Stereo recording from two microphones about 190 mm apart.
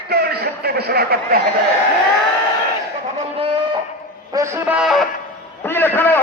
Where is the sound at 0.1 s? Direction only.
55° right (ahead or behind).